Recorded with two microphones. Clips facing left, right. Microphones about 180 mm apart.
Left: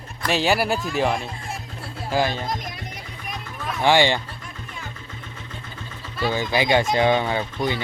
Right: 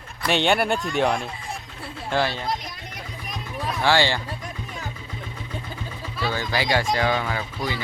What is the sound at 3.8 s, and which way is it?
Speech, 15° left (ahead or behind).